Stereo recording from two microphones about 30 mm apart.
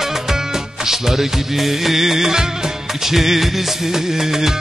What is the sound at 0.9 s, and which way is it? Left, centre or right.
Music of bollywood, centre.